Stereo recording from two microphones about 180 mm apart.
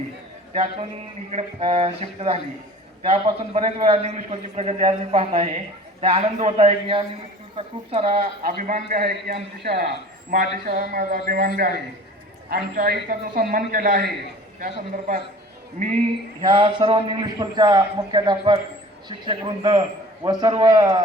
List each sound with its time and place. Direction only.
0.5 s a man's voice: 30° right (ahead or behind)
8.4 s a man's voice: 50° right (ahead or behind)
16.4 s a man's voice: 30° right (ahead or behind)